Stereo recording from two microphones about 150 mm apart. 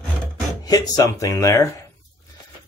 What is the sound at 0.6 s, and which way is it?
Speech, 25° left (ahead or behind).